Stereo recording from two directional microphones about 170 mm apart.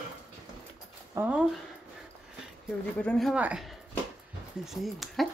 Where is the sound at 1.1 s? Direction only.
10° right (ahead or behind).